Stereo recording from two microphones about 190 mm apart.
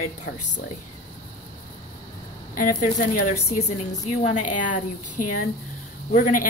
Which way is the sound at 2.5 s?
45° left (ahead or behind).